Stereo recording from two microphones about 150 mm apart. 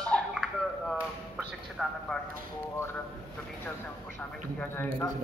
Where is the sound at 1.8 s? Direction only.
5° left (ahead or behind).